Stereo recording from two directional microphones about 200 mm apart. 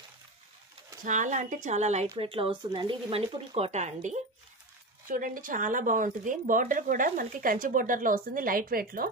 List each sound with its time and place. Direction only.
1.0 s speech: 40° right (ahead or behind)